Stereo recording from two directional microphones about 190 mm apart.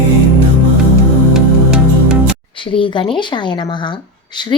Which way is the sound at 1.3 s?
5° right (ahead or behind).